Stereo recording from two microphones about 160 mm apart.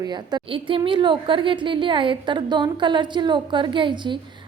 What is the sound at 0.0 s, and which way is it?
A woman's voice, 25° right (ahead or behind).